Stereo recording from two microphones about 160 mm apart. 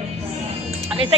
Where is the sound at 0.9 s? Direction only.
35° right (ahead or behind).